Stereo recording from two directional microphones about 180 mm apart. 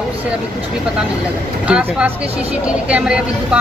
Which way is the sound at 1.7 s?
5° right (ahead or behind).